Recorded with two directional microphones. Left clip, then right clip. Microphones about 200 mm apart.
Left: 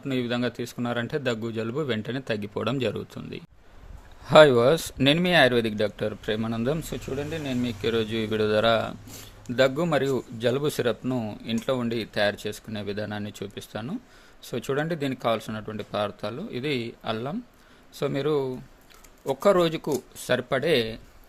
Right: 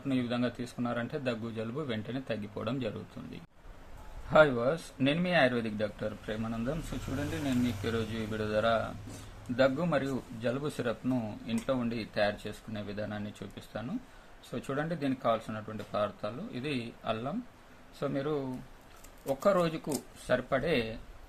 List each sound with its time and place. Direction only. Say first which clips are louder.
0.1 s speech: left 5 dB; 50° left (ahead or behind)